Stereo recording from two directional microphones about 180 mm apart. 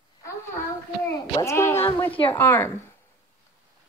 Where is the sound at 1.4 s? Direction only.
15° left (ahead or behind).